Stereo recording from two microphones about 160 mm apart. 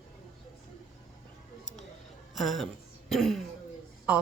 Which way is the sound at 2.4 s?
Centre (ahead or behind).